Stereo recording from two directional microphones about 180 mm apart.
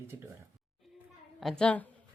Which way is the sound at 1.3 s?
Centre (ahead or behind).